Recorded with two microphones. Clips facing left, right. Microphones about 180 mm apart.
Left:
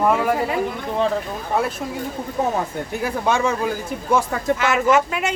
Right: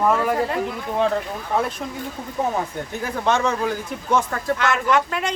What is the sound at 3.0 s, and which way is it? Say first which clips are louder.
Speech: left 1 dB; 10° left (ahead or behind).